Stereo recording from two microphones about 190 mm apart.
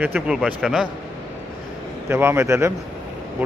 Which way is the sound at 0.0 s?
5° right (ahead or behind).